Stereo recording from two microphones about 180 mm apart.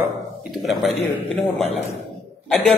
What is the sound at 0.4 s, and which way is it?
A man's voice, centre (ahead or behind).